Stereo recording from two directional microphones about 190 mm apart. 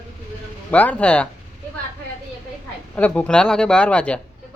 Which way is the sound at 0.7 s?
10° left (ahead or behind).